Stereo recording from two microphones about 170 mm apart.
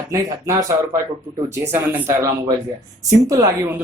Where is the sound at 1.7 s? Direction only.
15° right (ahead or behind).